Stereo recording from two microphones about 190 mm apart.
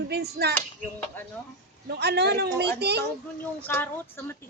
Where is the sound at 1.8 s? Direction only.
60° right (ahead or behind).